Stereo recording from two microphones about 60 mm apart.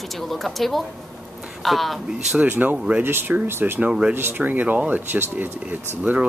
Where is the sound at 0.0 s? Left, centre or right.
Centre.